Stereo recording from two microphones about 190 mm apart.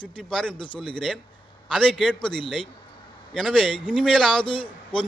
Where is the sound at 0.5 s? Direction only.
25° left (ahead or behind).